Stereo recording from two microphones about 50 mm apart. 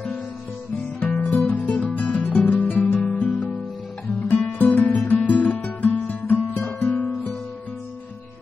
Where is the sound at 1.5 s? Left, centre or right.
Left.